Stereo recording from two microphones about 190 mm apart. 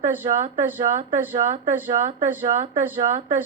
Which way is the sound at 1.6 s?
20° right (ahead or behind).